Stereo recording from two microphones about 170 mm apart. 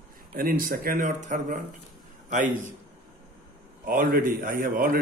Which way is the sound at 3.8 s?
55° right (ahead or behind).